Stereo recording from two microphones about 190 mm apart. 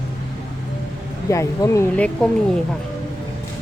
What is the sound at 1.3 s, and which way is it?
Speech, 15° left (ahead or behind).